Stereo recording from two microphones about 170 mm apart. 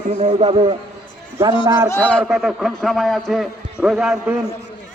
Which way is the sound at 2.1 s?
Centre (ahead or behind).